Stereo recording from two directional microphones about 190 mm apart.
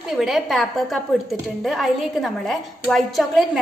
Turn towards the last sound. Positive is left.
turn(degrees=0)  # may be behind; listen again after turning